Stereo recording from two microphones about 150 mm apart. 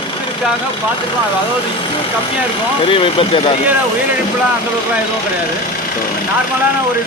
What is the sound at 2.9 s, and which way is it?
Speech, 35° left (ahead or behind).